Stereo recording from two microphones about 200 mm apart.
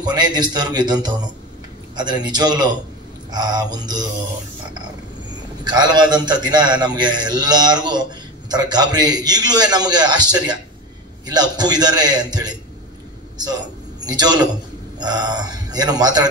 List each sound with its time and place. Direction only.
0.0 s a man's voice: 20° right (ahead or behind)
5.6 s a man's voice: 20° right (ahead or behind)
14.0 s a man's voice: 20° right (ahead or behind)